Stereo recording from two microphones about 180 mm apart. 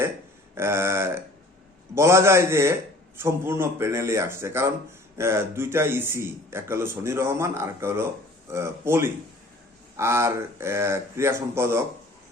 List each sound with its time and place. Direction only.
0.5 s a man's voice: 15° right (ahead or behind)